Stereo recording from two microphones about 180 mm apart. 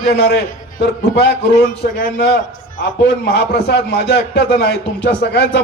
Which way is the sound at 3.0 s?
70° left (ahead or behind).